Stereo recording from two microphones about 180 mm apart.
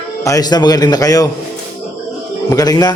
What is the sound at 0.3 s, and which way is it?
A man's voice, 20° left (ahead or behind).